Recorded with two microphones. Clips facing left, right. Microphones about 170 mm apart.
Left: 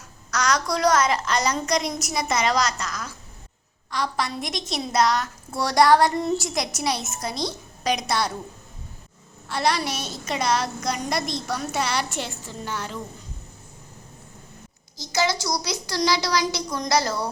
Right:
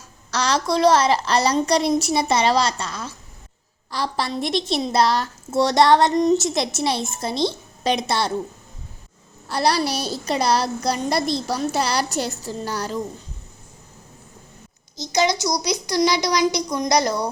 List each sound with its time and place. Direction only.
0.3 s a woman's voice: 30° right (ahead or behind)
9.5 s a woman's voice: 35° right (ahead or behind)
14.9 s a child's voice: 20° right (ahead or behind)